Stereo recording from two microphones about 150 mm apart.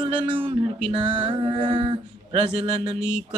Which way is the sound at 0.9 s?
35° right (ahead or behind).